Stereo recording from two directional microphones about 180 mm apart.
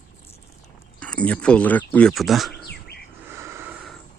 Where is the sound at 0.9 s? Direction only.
5° left (ahead or behind).